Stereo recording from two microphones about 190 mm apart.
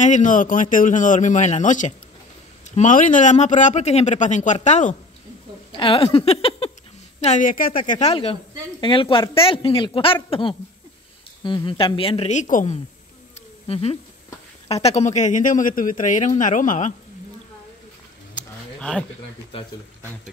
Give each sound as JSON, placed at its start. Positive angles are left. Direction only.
{"t": 0.0, "sound": "speech", "side_deg": 40}
{"t": 5.7, "sound": "a woman's voice", "side_deg": 25}
{"t": 8.1, "sound": "a woman's voice", "side_deg": 30}
{"t": 11.4, "sound": "a woman's voice", "side_deg": 25}
{"t": 18.8, "sound": "speech", "side_deg": 5}
{"t": 19.5, "sound": "a woman's voice", "side_deg": 30}